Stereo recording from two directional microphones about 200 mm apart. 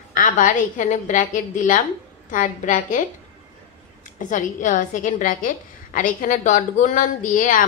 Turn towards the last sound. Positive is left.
turn(degrees=40)  # may be behind; listen again after turning